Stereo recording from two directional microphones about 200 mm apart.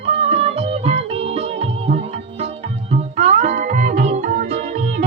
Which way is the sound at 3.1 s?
35° right (ahead or behind).